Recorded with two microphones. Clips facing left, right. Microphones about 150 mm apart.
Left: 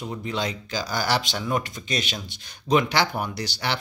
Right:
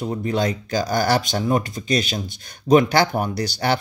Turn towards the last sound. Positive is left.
turn(degrees=-45)  # may be behind; listen again after turning